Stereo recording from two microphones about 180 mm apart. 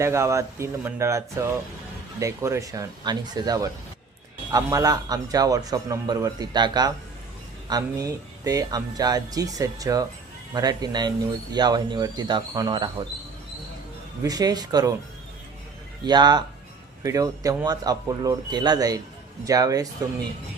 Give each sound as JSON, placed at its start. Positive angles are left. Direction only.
{"t": 0.0, "sound": "a man's voice", "side_deg": -15}
{"t": 14.3, "sound": "a man's voice", "side_deg": -20}
{"t": 16.0, "sound": "a man's voice", "side_deg": -25}